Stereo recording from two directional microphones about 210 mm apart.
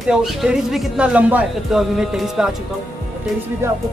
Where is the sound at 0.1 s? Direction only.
5° right (ahead or behind).